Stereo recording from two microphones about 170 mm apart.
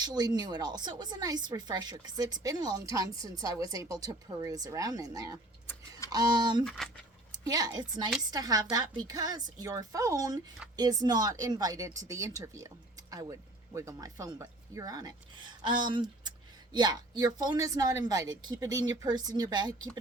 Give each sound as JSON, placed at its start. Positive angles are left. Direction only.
{"t": 0.0, "sound": "speech", "side_deg": -25}
{"t": 6.7, "sound": "speech", "side_deg": 5}
{"t": 7.4, "sound": "speech", "side_deg": -20}